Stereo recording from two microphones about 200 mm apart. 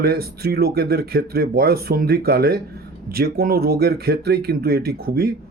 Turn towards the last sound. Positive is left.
turn(degrees=-50)  # may be behind; listen again after turning